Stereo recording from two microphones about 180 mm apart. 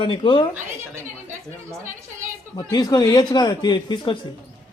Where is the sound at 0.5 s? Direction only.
15° right (ahead or behind).